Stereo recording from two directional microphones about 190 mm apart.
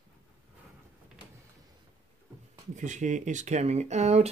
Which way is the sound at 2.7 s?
40° right (ahead or behind).